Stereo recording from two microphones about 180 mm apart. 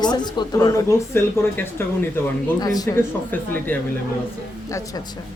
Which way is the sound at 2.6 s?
20° left (ahead or behind).